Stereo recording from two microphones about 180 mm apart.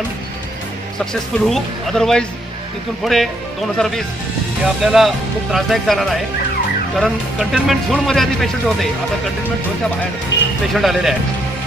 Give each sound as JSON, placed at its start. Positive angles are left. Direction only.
{"t": 1.4, "sound": "speech", "side_deg": 5}
{"t": 10.3, "sound": "speech", "side_deg": 75}
{"t": 10.7, "sound": "speech", "side_deg": 0}